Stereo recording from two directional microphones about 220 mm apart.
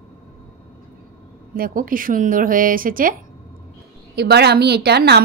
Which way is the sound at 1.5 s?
40° right (ahead or behind).